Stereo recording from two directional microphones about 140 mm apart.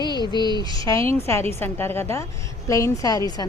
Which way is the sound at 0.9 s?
20° left (ahead or behind).